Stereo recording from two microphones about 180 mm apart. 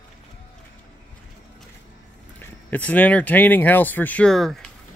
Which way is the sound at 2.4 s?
10° left (ahead or behind).